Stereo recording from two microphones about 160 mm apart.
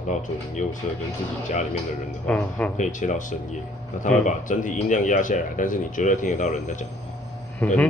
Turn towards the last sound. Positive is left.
turn(degrees=5)  # may be behind; listen again after turning